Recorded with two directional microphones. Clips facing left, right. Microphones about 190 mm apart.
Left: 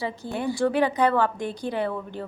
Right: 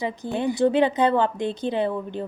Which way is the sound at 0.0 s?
20° right (ahead or behind).